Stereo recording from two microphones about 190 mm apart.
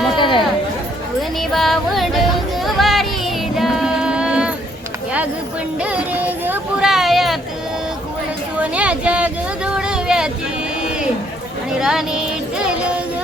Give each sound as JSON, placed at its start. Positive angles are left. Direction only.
{"t": 0.2, "sound": "chatter", "side_deg": 25}
{"t": 1.4, "sound": "music", "side_deg": 0}
{"t": 5.8, "sound": "music", "side_deg": -10}
{"t": 8.5, "sound": "a sound", "side_deg": -5}
{"t": 9.7, "sound": "vehicle", "side_deg": -5}
{"t": 11.8, "sound": "a sound", "side_deg": -5}